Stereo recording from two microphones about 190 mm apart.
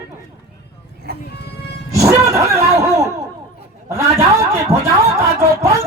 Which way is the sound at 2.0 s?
15° right (ahead or behind).